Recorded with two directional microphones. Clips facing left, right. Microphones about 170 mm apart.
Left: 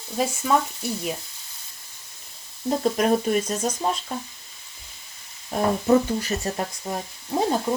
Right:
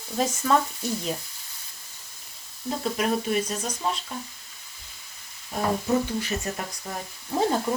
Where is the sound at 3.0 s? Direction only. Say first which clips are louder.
Left 2 dB; 45° left (ahead or behind).